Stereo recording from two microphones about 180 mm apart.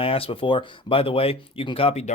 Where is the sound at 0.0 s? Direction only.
30° left (ahead or behind).